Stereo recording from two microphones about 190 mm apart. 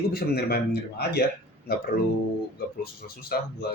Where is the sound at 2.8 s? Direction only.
55° left (ahead or behind).